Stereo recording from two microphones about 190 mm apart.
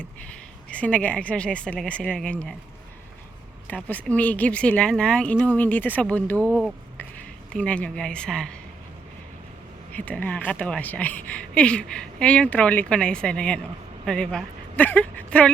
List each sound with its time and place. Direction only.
0.7 s speech: 5° left (ahead or behind)
3.8 s speech: 10° left (ahead or behind)
6.3 s speech: 10° right (ahead or behind)
7.5 s speech: 5° left (ahead or behind)
9.9 s speech: 10° left (ahead or behind)